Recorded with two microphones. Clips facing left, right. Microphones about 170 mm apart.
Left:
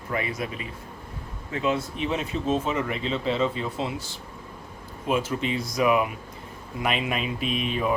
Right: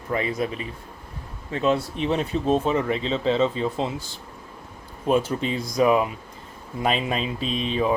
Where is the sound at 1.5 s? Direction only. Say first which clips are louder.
Right 4 dB; 35° right (ahead or behind).